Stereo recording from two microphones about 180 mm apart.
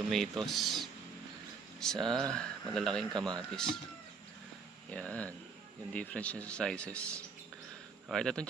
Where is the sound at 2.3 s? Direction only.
5° left (ahead or behind).